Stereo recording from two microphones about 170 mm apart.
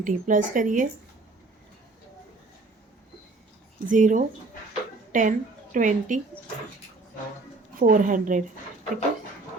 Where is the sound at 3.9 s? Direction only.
50° right (ahead or behind).